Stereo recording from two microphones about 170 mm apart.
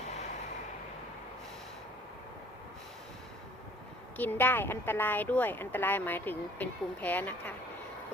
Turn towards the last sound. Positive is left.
turn(degrees=10)  # may be behind; listen again after turning